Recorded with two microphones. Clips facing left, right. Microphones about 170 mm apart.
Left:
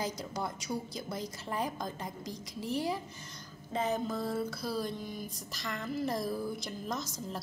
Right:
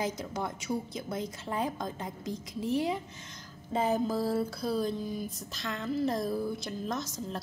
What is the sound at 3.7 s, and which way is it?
Music, 5° right (ahead or behind).